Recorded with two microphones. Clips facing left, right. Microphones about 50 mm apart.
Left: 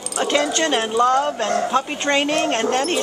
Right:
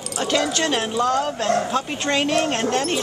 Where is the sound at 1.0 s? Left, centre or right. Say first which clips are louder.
Left 2 dB; centre.